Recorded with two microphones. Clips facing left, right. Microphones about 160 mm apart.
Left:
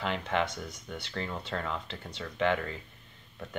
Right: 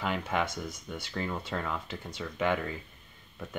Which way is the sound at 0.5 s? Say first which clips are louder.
Right 2 dB; 45° right (ahead or behind).